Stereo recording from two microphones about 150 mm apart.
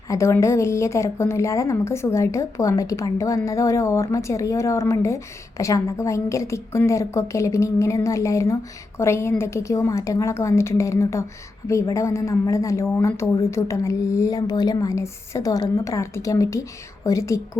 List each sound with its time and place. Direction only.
0.1 s a woman's voice: 20° left (ahead or behind)